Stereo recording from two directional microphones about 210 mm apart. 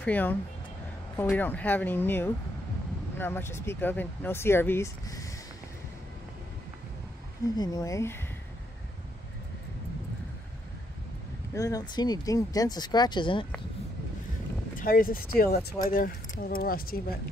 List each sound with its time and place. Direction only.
0.0 s speech: 10° left (ahead or behind)
7.5 s speech: 20° left (ahead or behind)
11.5 s speech: 15° left (ahead or behind)
14.8 s speech: 45° left (ahead or behind)